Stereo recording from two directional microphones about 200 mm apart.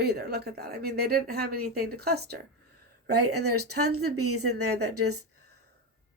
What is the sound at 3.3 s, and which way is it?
Speech, 90° right.